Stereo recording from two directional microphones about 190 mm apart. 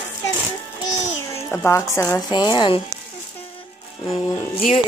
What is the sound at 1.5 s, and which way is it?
Speech, 10° left (ahead or behind).